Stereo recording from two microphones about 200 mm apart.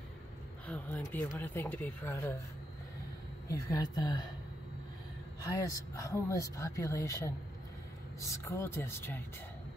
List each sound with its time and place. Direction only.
0.7 s speech: 10° left (ahead or behind)
3.4 s a woman's voice: 15° left (ahead or behind)
5.4 s speech: 15° left (ahead or behind)
8.2 s speech: 15° left (ahead or behind)